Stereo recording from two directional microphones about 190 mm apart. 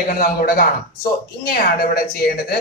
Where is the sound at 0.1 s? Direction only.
50° left (ahead or behind).